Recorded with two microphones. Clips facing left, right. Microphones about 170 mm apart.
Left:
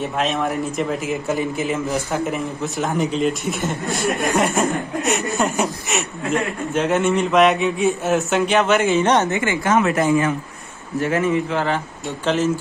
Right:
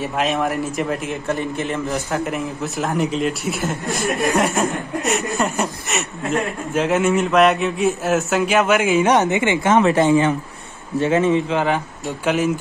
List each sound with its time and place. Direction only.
0.0 s a man's voice: centre (ahead or behind)
9.2 s speech: 20° right (ahead or behind)